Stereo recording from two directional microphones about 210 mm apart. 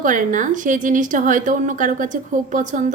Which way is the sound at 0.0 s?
40° right (ahead or behind).